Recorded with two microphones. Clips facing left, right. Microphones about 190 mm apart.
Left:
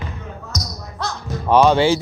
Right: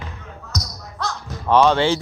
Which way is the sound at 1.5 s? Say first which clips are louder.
Left 2 dB; 10° left (ahead or behind).